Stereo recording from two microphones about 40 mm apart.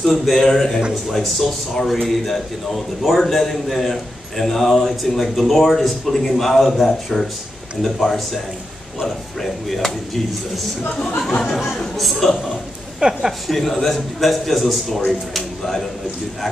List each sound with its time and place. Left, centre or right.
0.0 s a man's voice: centre
9.0 s speech: centre
11.0 s a man's voice: centre
12.0 s speech: centre
13.0 s speech: right
13.5 s speech: centre